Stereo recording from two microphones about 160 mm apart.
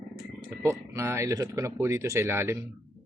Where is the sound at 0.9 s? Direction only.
20° right (ahead or behind).